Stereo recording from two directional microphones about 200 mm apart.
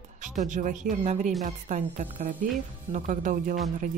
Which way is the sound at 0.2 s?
40° right (ahead or behind).